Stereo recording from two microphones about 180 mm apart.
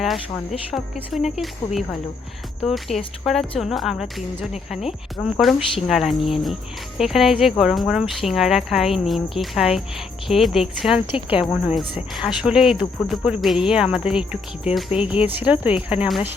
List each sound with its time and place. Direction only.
0.7 s speech: centre (ahead or behind)
11.1 s speech: 30° left (ahead or behind)
12.1 s speech: 5° right (ahead or behind)